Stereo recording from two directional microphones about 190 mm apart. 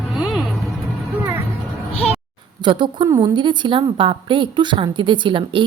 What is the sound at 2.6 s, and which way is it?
A woman's voice, 25° right (ahead or behind).